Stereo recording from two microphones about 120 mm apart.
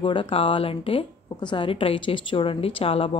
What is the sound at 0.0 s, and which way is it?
A woman's voice, 45° left (ahead or behind).